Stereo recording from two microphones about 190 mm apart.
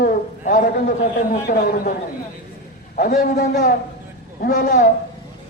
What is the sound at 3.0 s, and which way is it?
A man's voice, 40° left (ahead or behind).